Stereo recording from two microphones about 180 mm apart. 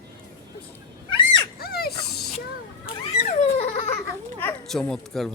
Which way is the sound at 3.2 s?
35° left (ahead or behind).